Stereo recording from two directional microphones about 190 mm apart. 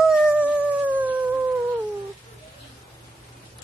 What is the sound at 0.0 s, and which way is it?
Howl, 5° right (ahead or behind).